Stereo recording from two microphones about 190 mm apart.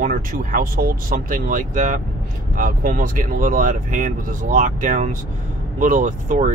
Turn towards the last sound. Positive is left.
turn(degrees=-40)  # may be behind; listen again after turning